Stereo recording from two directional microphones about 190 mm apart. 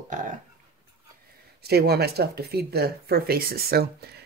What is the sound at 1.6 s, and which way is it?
Speech, 55° right (ahead or behind).